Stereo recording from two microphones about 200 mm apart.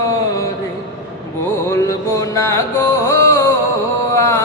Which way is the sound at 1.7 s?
15° left (ahead or behind).